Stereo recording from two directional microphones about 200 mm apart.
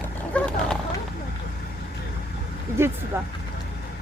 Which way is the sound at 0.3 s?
5° left (ahead or behind).